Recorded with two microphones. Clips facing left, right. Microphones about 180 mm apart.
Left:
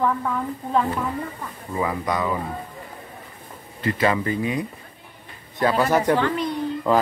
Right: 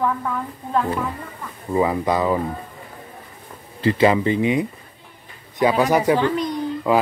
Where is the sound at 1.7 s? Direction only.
25° right (ahead or behind).